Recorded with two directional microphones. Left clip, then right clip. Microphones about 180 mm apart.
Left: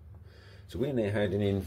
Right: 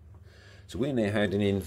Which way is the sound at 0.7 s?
25° right (ahead or behind).